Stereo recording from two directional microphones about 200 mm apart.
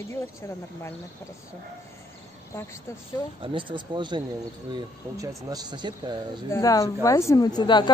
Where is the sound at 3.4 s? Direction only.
25° right (ahead or behind).